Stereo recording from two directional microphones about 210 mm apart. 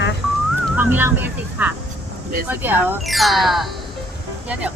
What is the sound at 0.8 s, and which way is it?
Speech, 10° right (ahead or behind).